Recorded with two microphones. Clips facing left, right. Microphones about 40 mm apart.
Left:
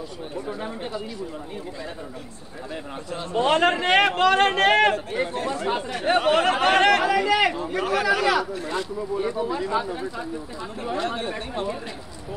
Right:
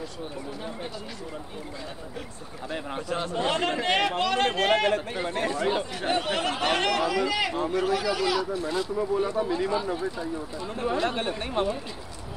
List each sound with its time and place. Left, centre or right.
3.3 s a man's voice: left
5.9 s a man's voice: left
9.5 s speech: left
11.1 s speech: right